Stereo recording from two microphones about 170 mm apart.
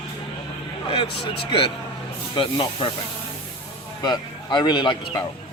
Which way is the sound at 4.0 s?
25° left (ahead or behind).